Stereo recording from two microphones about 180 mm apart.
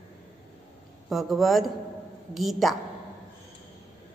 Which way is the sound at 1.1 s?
Centre (ahead or behind).